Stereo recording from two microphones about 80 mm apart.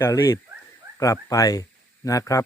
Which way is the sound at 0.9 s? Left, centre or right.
Left.